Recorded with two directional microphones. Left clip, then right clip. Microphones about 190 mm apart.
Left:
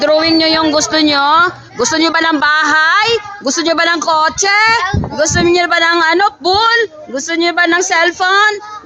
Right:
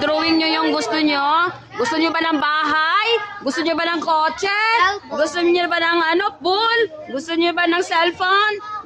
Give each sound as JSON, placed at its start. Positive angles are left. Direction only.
{"t": 0.0, "sound": "speech", "side_deg": 35}